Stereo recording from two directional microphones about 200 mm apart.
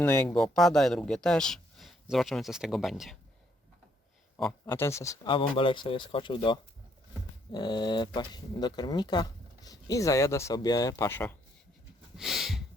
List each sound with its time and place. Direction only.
0.0 s speech: 10° left (ahead or behind)
4.6 s speech: 10° left (ahead or behind)
12.1 s a sound: centre (ahead or behind)